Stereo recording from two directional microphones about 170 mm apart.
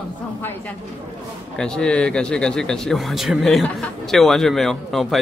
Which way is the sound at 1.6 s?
5° left (ahead or behind).